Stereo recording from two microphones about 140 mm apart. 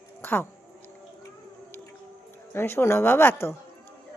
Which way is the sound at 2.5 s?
15° left (ahead or behind).